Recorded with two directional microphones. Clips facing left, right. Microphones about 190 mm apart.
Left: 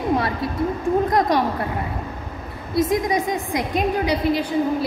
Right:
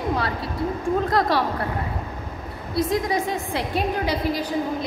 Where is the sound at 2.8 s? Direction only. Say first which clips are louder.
Left 3 dB; 20° left (ahead or behind).